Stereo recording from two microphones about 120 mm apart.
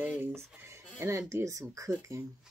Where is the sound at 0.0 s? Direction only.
15° right (ahead or behind).